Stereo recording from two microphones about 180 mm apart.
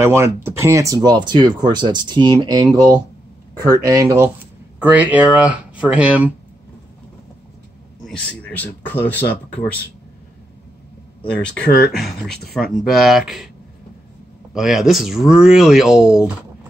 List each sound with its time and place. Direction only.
0.0 s speech: 15° right (ahead or behind)
8.0 s a man's voice: 5° left (ahead or behind)
11.9 s speech: centre (ahead or behind)
14.5 s speech: centre (ahead or behind)